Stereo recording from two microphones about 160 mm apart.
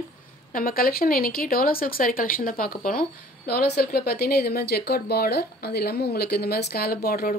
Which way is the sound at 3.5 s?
80° left.